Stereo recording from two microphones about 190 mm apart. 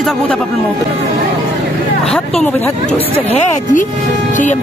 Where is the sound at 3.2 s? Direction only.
40° left (ahead or behind).